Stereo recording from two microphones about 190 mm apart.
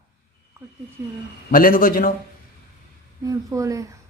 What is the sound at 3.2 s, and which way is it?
Speech, 15° right (ahead or behind).